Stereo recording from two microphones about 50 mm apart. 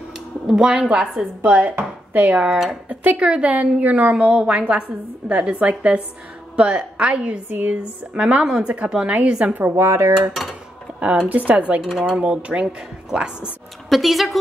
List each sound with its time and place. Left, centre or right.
0.5 s a woman's voice: centre
1.4 s speech: right
2.3 s a woman's voice: centre
2.9 s a woman's voice: right
9.7 s speech: right
11.2 s speech: right
12.0 s a woman's voice: centre
13.8 s a woman's voice: centre